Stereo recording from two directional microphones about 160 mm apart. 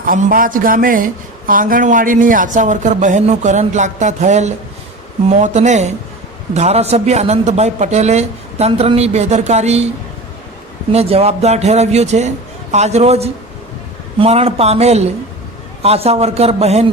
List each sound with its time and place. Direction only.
0.0 s speech: 60° right (ahead or behind); by 9.9 s 45° right (ahead or behind)
10.9 s a man's voice: 40° right (ahead or behind)